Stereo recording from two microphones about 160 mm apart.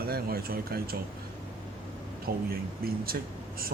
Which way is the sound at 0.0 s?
70° right (ahead or behind).